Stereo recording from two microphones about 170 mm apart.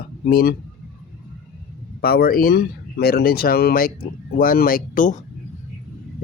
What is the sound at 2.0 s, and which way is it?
Speech, 65° left (ahead or behind).